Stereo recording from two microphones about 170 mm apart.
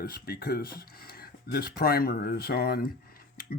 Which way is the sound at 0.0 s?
60° left (ahead or behind).